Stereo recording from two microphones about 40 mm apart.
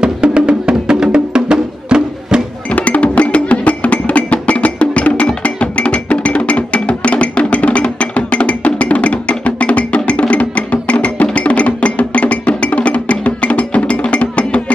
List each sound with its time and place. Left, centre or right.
0.0 s music: right
2.7 s music: left